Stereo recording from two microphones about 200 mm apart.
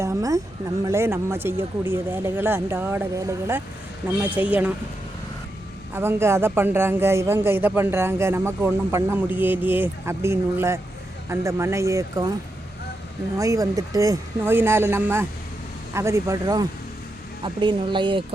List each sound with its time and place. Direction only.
0.0 s a sound: 15° right (ahead or behind)
0.9 s a man's voice: 15° right (ahead or behind)
5.9 s a man's voice: 10° right (ahead or behind)
13.3 s a man's voice: 15° right (ahead or behind)